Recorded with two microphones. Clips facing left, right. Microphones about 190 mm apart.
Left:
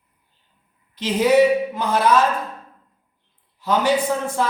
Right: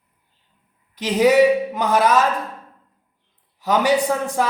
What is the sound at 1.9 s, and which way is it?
Speech, 15° right (ahead or behind).